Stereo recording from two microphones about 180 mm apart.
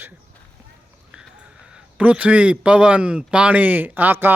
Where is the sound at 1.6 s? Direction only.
5° right (ahead or behind).